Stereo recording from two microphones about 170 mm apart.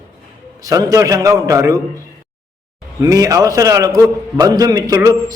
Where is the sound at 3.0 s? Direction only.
20° right (ahead or behind).